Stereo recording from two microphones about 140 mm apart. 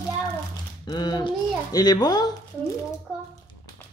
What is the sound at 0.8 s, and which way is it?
Speech, 30° left (ahead or behind).